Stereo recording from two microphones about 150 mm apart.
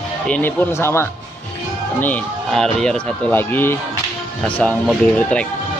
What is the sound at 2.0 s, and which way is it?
Speech, 5° left (ahead or behind).